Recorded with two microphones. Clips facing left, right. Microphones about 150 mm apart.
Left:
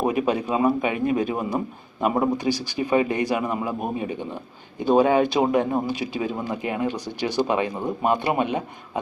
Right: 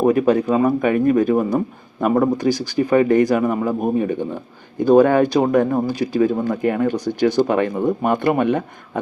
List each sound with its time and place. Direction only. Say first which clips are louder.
0.0 s speech: right 7 dB; 45° right (ahead or behind)